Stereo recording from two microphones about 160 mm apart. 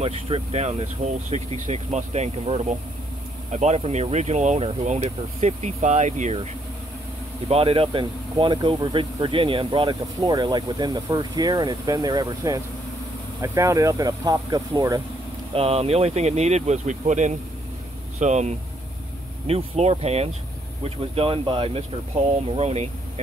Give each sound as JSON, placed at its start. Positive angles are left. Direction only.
{"t": 0.0, "sound": "speech", "side_deg": -40}
{"t": 15.5, "sound": "speech", "side_deg": -40}